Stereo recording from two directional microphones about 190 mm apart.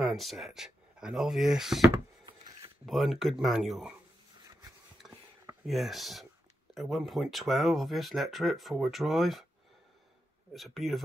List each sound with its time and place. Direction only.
0.1 s speech: centre (ahead or behind)
1.8 s a sound: 25° right (ahead or behind)
2.9 s speech: centre (ahead or behind)
5.7 s speech: centre (ahead or behind)
10.5 s speech: centre (ahead or behind)